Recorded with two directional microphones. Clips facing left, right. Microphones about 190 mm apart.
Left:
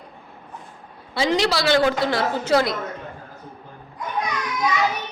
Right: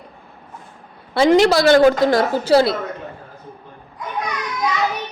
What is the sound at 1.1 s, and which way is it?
A woman's voice, 55° right (ahead or behind).